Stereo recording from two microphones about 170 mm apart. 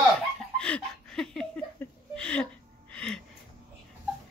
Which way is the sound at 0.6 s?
5° left (ahead or behind).